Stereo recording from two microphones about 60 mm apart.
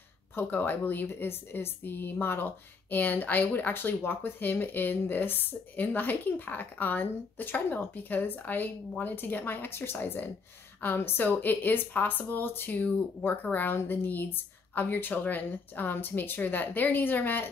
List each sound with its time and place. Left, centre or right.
0.5 s a woman's voice: left